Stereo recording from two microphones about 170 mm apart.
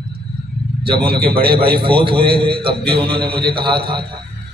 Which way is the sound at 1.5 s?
65° right (ahead or behind).